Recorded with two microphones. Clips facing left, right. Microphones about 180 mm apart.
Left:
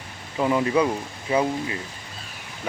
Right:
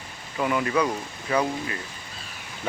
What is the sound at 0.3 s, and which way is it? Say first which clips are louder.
Speech: left 3 dB; 25° left (ahead or behind).